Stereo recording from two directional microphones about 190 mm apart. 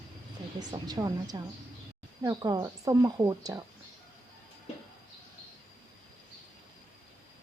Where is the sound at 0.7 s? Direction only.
20° right (ahead or behind).